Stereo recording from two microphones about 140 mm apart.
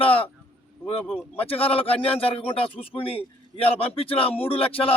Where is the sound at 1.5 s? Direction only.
45° left (ahead or behind).